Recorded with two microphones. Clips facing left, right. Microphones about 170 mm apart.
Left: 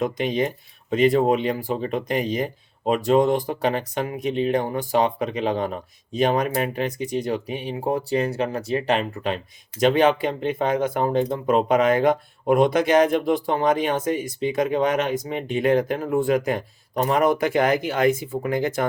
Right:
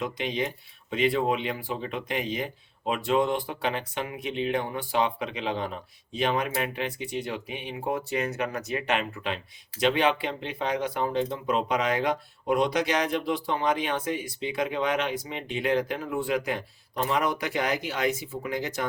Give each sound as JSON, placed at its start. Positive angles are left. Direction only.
{"t": 0.0, "sound": "speech", "side_deg": 45}